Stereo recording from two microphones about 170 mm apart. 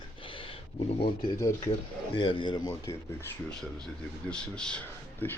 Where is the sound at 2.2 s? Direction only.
30° left (ahead or behind).